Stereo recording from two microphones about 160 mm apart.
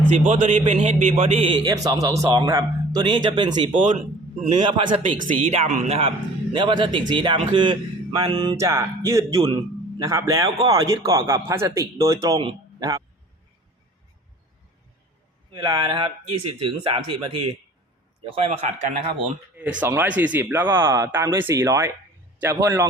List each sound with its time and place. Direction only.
0.1 s a man's voice: 50° right (ahead or behind)
1.3 s a man's voice: 35° right (ahead or behind)
3.7 s a man's voice: 50° right (ahead or behind)
4.4 s a man's voice: 30° right (ahead or behind)
5.3 s a man's voice: 45° right (ahead or behind); by 12.4 s 20° right (ahead or behind)
15.5 s a man's voice: 25° right (ahead or behind); by 19.3 s 40° right (ahead or behind)
19.5 s a man's voice: 10° right (ahead or behind)